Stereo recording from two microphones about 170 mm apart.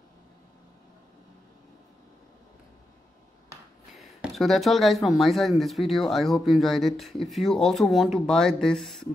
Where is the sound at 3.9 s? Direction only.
Centre (ahead or behind).